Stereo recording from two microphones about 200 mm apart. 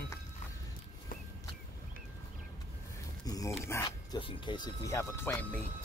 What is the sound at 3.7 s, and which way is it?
Speech, 15° left (ahead or behind).